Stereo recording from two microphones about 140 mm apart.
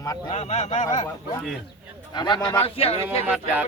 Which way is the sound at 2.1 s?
30° left (ahead or behind).